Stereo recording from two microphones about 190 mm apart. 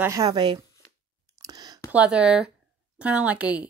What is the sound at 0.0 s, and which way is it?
Speech, 20° right (ahead or behind).